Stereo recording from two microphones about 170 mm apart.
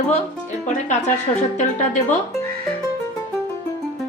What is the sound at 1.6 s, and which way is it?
Speech, 45° left (ahead or behind).